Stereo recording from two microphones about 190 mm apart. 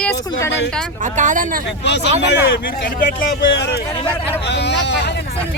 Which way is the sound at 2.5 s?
50° left (ahead or behind).